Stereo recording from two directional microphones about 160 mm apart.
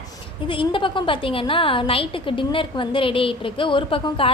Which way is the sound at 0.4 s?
30° left (ahead or behind).